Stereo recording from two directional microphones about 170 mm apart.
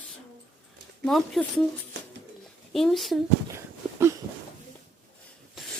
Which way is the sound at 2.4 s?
Centre (ahead or behind).